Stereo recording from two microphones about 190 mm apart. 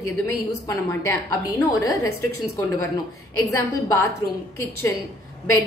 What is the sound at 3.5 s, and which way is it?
Speech, 15° left (ahead or behind).